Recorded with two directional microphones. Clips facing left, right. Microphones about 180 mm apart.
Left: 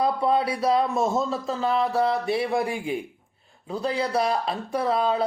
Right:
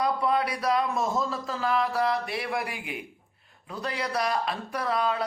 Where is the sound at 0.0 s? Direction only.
30° left (ahead or behind).